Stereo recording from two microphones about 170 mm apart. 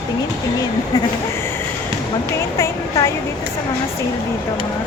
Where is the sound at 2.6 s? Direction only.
20° left (ahead or behind).